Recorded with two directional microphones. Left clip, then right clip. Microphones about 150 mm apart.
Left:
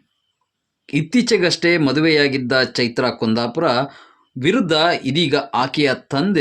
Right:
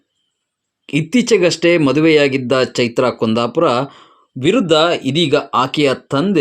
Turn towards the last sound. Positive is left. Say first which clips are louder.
# right 3 dB
turn(degrees=-20)  # may be behind; listen again after turning